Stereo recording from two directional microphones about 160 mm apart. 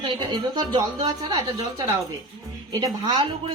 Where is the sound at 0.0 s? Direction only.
30° right (ahead or behind).